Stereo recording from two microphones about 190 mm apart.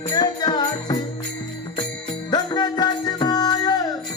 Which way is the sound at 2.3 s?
20° left (ahead or behind).